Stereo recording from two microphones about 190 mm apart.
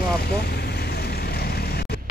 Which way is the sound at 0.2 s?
60° left (ahead or behind).